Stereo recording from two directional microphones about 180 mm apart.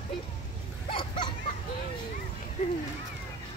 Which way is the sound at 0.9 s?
25° left (ahead or behind).